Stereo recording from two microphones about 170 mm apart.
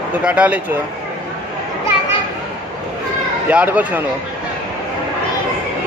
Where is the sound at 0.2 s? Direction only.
10° right (ahead or behind).